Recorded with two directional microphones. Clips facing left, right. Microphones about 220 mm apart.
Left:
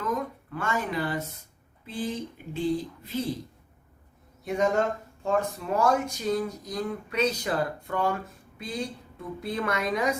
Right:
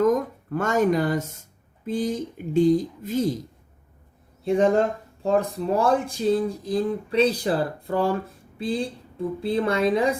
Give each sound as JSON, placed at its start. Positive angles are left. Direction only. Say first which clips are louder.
{"t": 0.0, "sound": "speech", "louder": "right 10 dB", "side_deg": -45}
{"t": 4.4, "sound": "a woman's voice", "louder": "right 5 dB", "side_deg": -30}